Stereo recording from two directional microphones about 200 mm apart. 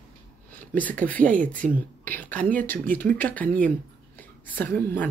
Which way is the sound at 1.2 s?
40° right (ahead or behind).